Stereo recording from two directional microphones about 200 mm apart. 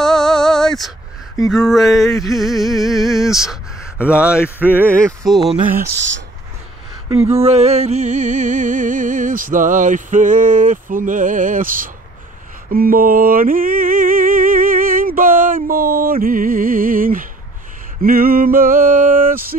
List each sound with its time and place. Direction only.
0.0 s a sound: centre (ahead or behind)
1.5 s speech: centre (ahead or behind)
7.1 s music: 30° right (ahead or behind)